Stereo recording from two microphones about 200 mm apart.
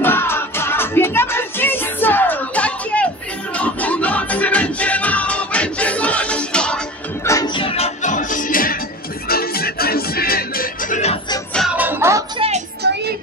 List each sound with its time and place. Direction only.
0.0 s music: 10° left (ahead or behind)
7.2 s music: 20° left (ahead or behind); by 11.1 s 35° left (ahead or behind)
11.5 s music: 5° right (ahead or behind)
12.4 s music: 30° right (ahead or behind)
12.8 s music: 60° right (ahead or behind)